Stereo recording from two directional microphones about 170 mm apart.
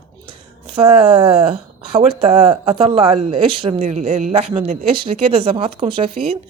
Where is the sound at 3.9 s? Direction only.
45° right (ahead or behind).